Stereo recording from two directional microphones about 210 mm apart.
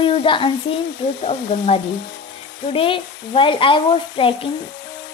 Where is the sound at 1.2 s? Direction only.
30° left (ahead or behind).